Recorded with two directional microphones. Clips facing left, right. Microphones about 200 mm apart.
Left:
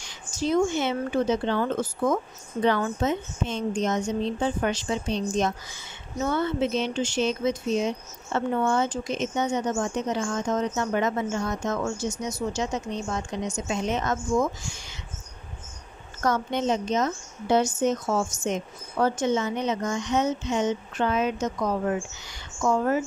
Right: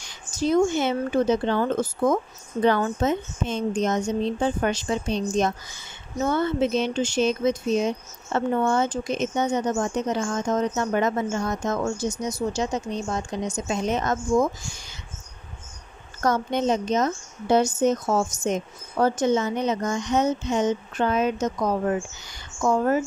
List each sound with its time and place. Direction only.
0.5 s a woman's voice: 45° right (ahead or behind)
16.2 s a woman's voice: 40° right (ahead or behind)